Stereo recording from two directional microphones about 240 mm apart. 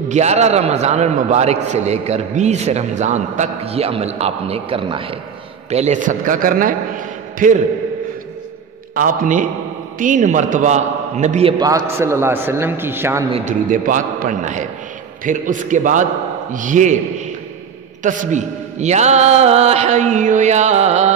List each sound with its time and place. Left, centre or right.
0.1 s a man's voice: right
8.9 s a man's voice: right
11.6 s a man's voice: centre
13.3 s a man's voice: right
18.0 s a man's voice: right